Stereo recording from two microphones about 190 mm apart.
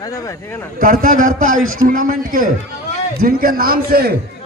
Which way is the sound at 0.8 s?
45° right (ahead or behind).